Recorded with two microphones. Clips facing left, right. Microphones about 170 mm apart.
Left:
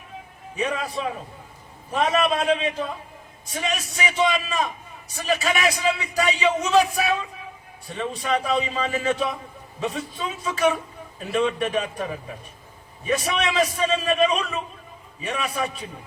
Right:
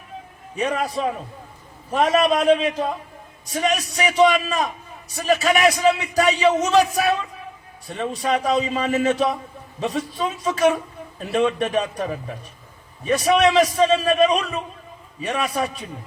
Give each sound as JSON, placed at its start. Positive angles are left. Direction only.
{"t": 0.5, "sound": "a man's voice", "side_deg": -40}